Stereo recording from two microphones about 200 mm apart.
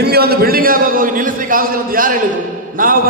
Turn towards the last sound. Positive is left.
turn(degrees=-45)  # may be behind; listen again after turning